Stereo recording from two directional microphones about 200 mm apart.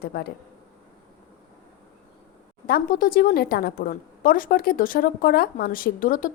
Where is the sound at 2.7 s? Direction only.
45° left (ahead or behind).